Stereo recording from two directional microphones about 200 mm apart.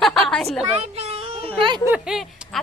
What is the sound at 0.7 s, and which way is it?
A child's voice, 30° right (ahead or behind).